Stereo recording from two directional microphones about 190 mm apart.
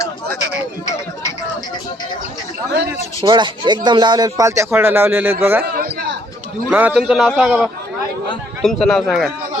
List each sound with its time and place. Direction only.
3.2 s speech: 25° right (ahead or behind)
6.7 s a man's voice: 10° right (ahead or behind)